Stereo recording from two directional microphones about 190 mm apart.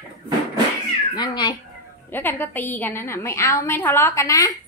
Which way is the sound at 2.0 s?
10° left (ahead or behind).